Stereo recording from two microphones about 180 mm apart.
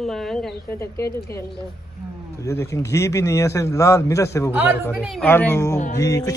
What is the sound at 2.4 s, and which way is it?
A man's voice, 15° left (ahead or behind).